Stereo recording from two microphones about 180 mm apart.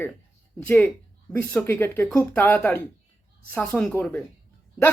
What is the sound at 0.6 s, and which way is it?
Speech, 10° left (ahead or behind).